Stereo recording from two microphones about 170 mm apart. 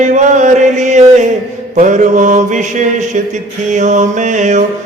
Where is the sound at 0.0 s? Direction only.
45° right (ahead or behind).